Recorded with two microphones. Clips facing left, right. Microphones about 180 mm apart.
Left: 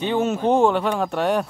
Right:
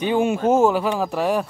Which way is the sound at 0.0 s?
10° right (ahead or behind).